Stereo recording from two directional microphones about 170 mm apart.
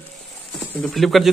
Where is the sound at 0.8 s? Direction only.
Centre (ahead or behind).